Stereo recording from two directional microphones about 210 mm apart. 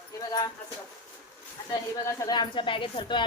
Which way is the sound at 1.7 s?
15° left (ahead or behind).